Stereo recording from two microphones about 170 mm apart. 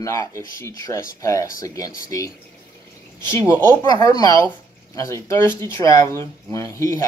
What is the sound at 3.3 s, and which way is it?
Speech, 15° left (ahead or behind).